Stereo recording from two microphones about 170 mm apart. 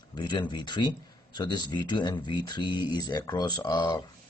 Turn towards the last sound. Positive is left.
turn(degrees=25)  # may be behind; listen again after turning